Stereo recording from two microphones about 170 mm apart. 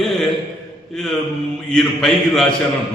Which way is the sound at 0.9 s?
Centre (ahead or behind).